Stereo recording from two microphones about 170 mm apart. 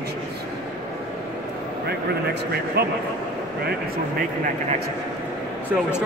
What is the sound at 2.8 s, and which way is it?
Speech, 65° right (ahead or behind).